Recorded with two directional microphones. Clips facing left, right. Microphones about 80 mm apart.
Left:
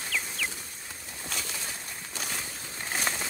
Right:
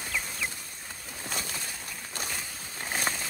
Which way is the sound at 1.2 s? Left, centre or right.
Centre.